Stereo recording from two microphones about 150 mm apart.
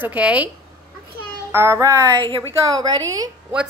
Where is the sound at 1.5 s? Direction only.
20° right (ahead or behind).